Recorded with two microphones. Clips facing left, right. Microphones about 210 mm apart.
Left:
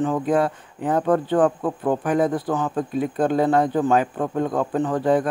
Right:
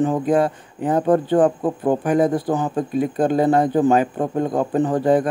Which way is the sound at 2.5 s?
10° right (ahead or behind).